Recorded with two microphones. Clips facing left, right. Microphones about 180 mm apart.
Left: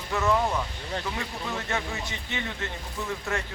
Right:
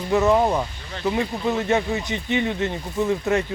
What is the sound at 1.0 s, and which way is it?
Speech, 20° right (ahead or behind).